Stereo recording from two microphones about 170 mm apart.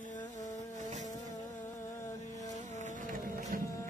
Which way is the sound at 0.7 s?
45° right (ahead or behind).